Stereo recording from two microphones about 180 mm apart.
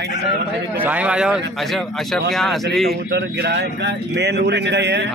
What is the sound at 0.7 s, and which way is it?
A man's voice, 10° right (ahead or behind).